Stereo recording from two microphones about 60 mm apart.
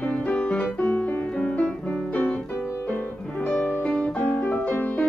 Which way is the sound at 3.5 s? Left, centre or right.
Left.